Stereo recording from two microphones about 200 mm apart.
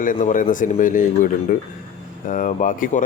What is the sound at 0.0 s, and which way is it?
Speech, 40° left (ahead or behind).